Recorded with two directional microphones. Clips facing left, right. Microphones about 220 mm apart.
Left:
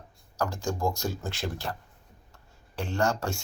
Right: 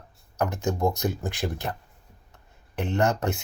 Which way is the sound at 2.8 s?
20° right (ahead or behind).